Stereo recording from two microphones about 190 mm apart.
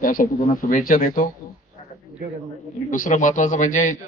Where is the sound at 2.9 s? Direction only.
40° left (ahead or behind).